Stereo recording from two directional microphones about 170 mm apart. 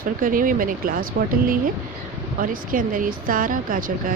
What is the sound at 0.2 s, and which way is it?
Speech, 55° right (ahead or behind).